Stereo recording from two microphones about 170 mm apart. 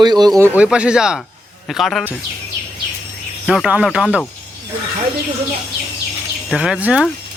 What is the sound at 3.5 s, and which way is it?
Speech, 5° right (ahead or behind).